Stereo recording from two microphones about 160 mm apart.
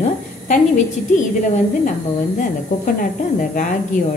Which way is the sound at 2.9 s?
55° left (ahead or behind).